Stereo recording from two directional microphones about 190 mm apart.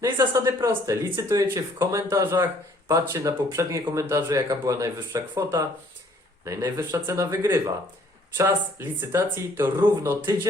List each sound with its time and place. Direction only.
0.0 s speech: 15° right (ahead or behind)